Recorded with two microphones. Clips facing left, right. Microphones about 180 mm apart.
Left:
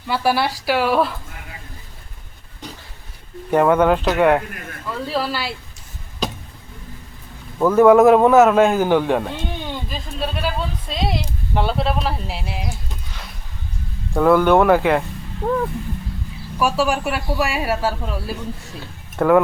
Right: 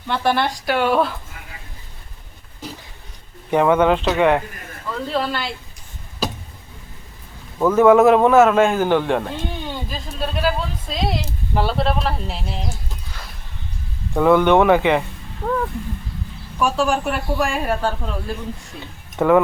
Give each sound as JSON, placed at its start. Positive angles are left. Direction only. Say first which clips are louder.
{"t": 0.1, "sound": "speech", "louder": "even", "side_deg": 5}
{"t": 3.5, "sound": "speech", "louder": "left 1 dB", "side_deg": 5}
{"t": 7.6, "sound": "a man's voice", "louder": "left 1 dB", "side_deg": 0}
{"t": 15.4, "sound": "speech", "louder": "left 2 dB", "side_deg": 25}
{"t": 16.6, "sound": "speech", "louder": "even", "side_deg": 5}